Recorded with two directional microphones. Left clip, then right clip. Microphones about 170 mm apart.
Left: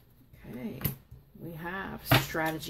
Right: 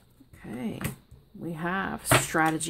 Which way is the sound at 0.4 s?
40° right (ahead or behind).